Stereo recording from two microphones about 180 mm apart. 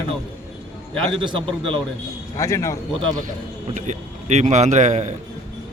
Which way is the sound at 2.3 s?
15° left (ahead or behind).